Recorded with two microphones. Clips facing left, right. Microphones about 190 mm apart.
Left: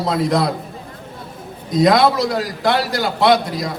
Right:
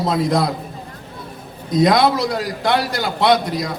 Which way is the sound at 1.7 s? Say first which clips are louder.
Left 1 dB; 25° right (ahead or behind).